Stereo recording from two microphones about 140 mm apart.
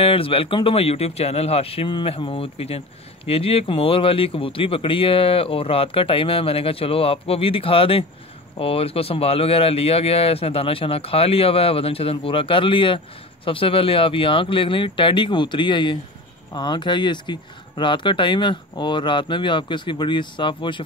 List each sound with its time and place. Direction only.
0.0 s speech: 40° left (ahead or behind)